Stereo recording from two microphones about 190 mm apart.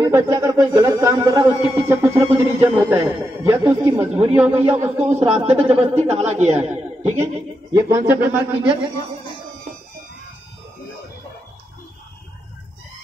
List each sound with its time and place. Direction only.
0.0 s a sound: 15° right (ahead or behind)
4.4 s speech: 10° right (ahead or behind)
6.0 s speech: 35° right (ahead or behind)
8.1 s speech: 10° right (ahead or behind)